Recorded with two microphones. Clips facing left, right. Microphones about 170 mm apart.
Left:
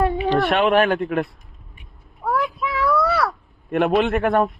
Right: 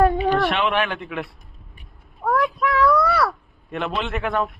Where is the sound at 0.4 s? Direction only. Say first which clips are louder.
Left 5 dB; 45° left (ahead or behind).